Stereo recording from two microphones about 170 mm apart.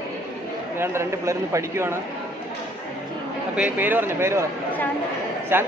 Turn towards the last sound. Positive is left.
turn(degrees=-15)  # may be behind; listen again after turning